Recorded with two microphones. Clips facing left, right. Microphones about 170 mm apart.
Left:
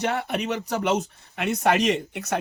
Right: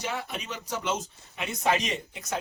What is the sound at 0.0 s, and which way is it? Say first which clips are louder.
Speech: left 8 dB; 65° left (ahead or behind).